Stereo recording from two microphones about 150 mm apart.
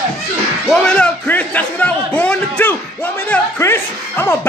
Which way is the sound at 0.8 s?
5° left (ahead or behind).